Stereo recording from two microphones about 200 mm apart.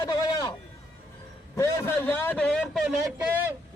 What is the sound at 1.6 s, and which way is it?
A man's voice, 10° left (ahead or behind).